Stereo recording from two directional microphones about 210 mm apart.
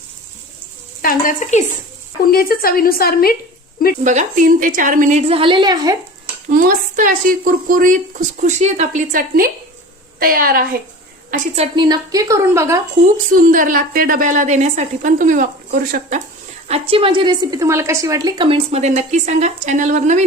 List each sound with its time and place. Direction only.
1.0 s a woman's voice: 40° left (ahead or behind)
4.0 s a woman's voice: 35° right (ahead or behind); by 6.0 s 20° right (ahead or behind)
6.5 s a woman's voice: 40° right (ahead or behind)
11.3 s a woman's voice: 30° right (ahead or behind); by 12.8 s 15° right (ahead or behind)
13.3 s a woman's voice: 40° right (ahead or behind)
16.6 s a woman's voice: 30° right (ahead or behind)